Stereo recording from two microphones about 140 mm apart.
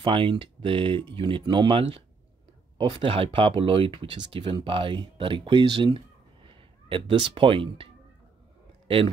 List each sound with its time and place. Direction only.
0.0 s a man's voice: 35° right (ahead or behind)